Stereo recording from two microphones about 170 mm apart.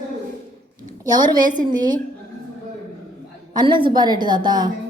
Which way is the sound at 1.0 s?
25° right (ahead or behind).